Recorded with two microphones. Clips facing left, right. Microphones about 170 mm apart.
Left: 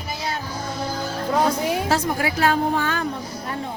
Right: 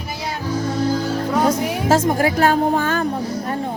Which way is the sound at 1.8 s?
45° right (ahead or behind).